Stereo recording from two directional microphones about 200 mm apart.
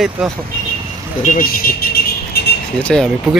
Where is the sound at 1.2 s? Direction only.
40° left (ahead or behind).